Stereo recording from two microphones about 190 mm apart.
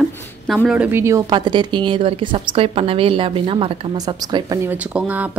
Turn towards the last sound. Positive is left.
turn(degrees=-5)  # may be behind; listen again after turning